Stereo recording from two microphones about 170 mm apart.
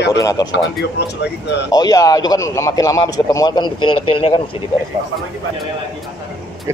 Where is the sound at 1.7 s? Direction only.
20° left (ahead or behind).